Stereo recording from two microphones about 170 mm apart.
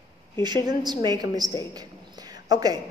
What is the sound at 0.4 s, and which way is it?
Speech, 25° right (ahead or behind).